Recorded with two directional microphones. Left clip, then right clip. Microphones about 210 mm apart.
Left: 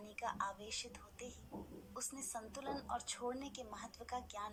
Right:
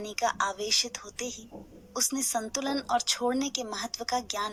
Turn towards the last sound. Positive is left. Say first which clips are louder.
# right 15 dB
turn(degrees=-45)  # may be behind; listen again after turning